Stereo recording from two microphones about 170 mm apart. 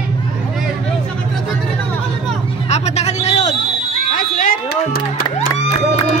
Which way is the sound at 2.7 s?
40° left (ahead or behind).